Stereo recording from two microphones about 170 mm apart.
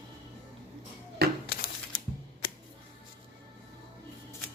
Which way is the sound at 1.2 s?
70° right (ahead or behind).